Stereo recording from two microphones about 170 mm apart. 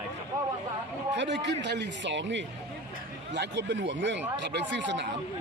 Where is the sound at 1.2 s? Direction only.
90° right.